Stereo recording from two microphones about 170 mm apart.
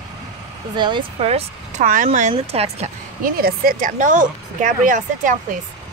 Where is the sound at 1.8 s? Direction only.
50° right (ahead or behind).